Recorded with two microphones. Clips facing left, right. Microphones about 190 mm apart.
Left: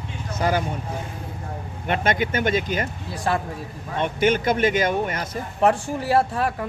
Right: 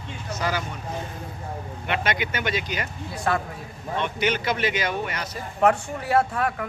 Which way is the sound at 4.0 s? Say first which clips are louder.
Left 5 dB; 50° left (ahead or behind).